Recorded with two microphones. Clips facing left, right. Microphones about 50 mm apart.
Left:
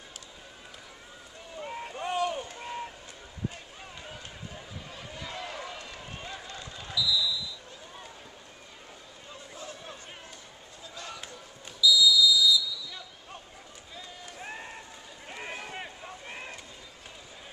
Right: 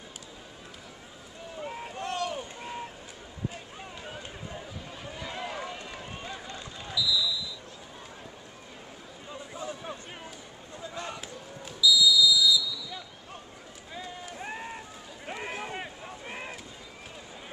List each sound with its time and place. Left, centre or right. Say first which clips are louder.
1.6 s a sound: even; centre
2.5 s vehicle: left 1 dB; centre
3.4 s run: right 1 dB; centre
6.5 s basketball bounce: even; centre
9.3 s a sound: right 5 dB; centre
11.8 s basketball bounce: even; centre
14.2 s run: even; centre
15.2 s boat: right 4 dB; centre